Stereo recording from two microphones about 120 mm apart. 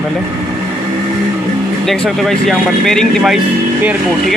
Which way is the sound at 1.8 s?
5° left (ahead or behind).